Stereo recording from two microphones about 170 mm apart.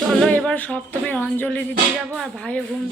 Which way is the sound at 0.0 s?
5° right (ahead or behind).